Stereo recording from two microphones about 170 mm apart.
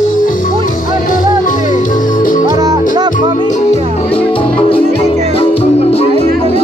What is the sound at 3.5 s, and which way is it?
Music, 35° left (ahead or behind).